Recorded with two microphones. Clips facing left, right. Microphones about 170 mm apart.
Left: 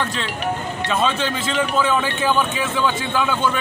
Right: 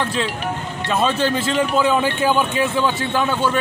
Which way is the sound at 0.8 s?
5° right (ahead or behind).